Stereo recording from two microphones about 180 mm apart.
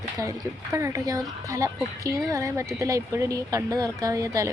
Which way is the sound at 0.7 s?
15° right (ahead or behind).